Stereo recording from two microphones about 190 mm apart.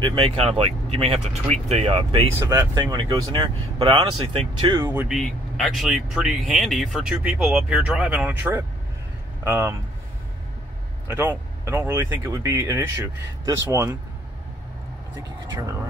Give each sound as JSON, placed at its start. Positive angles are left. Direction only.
{"t": 0.1, "sound": "speech", "side_deg": -30}
{"t": 2.3, "sound": "speech", "side_deg": -15}
{"t": 5.0, "sound": "speech", "side_deg": 0}
{"t": 11.1, "sound": "speech", "side_deg": -15}
{"t": 15.1, "sound": "speech", "side_deg": -20}